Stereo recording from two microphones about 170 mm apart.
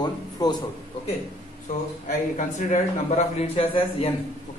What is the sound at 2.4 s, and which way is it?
A man's voice, 45° left (ahead or behind).